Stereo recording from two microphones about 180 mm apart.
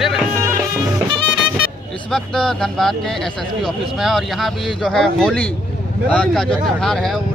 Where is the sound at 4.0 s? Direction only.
Centre (ahead or behind).